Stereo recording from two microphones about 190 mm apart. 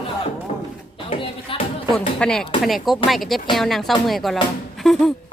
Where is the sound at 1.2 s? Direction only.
30° left (ahead or behind).